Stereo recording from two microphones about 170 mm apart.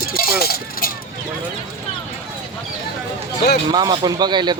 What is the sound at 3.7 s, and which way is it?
Speech, 25° right (ahead or behind).